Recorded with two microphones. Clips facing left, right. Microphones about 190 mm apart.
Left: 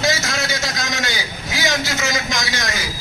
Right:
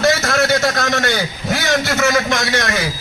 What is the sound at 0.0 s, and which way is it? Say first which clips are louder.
A man's voice: right 6 dB; 60° right (ahead or behind).